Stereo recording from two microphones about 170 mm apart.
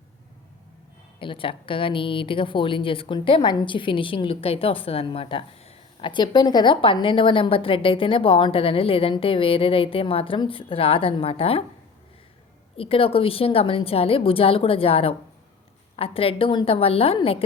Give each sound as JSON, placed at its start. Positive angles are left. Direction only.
{"t": 1.2, "sound": "a woman's voice", "side_deg": 30}
{"t": 12.7, "sound": "a woman's voice", "side_deg": 35}